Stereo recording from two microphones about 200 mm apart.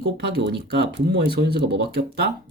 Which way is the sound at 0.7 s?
55° right (ahead or behind).